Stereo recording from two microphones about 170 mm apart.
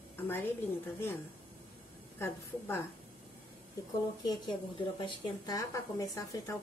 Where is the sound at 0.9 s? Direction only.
15° left (ahead or behind).